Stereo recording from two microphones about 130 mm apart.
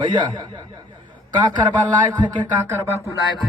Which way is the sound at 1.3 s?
35° right (ahead or behind).